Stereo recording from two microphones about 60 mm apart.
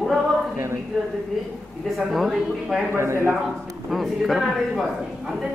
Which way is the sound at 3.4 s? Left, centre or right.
Centre.